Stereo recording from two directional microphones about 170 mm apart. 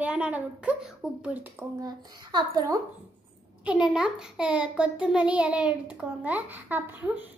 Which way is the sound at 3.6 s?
5° right (ahead or behind).